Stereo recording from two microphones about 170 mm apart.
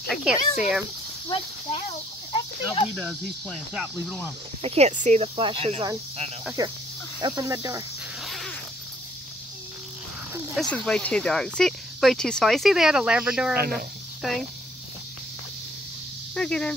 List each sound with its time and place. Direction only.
0.0 s speech: centre (ahead or behind)
2.3 s snake: 30° left (ahead or behind)
2.9 s speech: 5° right (ahead or behind)
4.6 s speech: 35° right (ahead or behind)
6.6 s speech: 20° right (ahead or behind)
8.2 s a sound: centre (ahead or behind)
10.5 s speech: centre (ahead or behind)
16.3 s speech: 5° left (ahead or behind)